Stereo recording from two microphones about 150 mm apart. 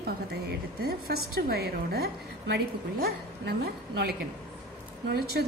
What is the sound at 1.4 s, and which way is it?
A woman's voice, 90° right.